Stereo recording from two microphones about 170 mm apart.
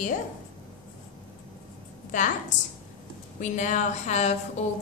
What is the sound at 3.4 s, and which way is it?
Speech, 45° left (ahead or behind).